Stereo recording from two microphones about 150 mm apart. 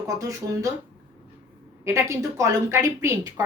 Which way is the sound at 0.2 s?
20° right (ahead or behind).